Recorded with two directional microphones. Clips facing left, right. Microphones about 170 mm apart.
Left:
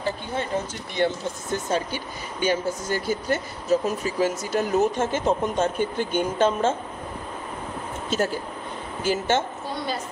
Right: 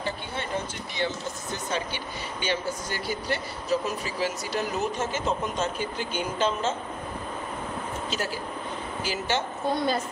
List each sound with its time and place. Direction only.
0.9 s speech: 50° left (ahead or behind)
8.1 s speech: 50° left (ahead or behind)